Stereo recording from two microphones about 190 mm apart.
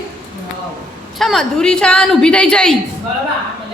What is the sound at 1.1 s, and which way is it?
A woman's voice, centre (ahead or behind).